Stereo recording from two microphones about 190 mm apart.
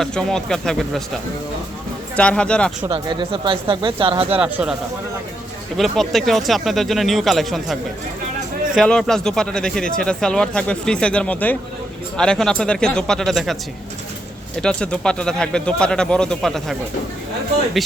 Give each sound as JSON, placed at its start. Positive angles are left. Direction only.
{"t": 0.0, "sound": "speech", "side_deg": 5}
{"t": 2.1, "sound": "speech", "side_deg": 5}
{"t": 2.9, "sound": "speech", "side_deg": -25}
{"t": 4.4, "sound": "speech", "side_deg": -5}
{"t": 5.7, "sound": "speech", "side_deg": 0}
{"t": 14.6, "sound": "speech", "side_deg": 5}